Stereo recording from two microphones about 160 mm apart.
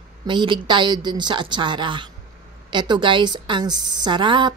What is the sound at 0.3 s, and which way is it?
A woman's voice, 30° right (ahead or behind).